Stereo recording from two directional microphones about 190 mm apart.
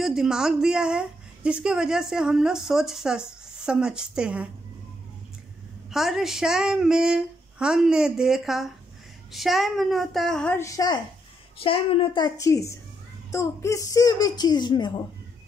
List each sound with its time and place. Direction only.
0.0 s speech: 5° right (ahead or behind)
5.9 s speech: centre (ahead or behind); by 11.0 s 15° left (ahead or behind)
11.5 s a child's voice: 30° left (ahead or behind)